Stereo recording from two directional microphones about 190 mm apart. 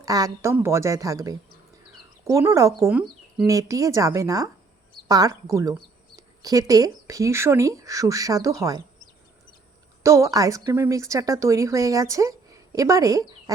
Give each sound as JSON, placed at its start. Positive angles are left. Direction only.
{"t": 0.0, "sound": "a woman's voice", "side_deg": -20}
{"t": 10.0, "sound": "speech", "side_deg": -15}